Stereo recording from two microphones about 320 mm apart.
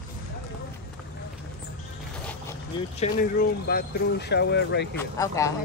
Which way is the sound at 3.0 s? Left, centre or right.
Left.